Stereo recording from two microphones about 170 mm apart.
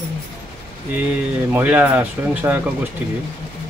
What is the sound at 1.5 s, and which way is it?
Speech, 10° right (ahead or behind).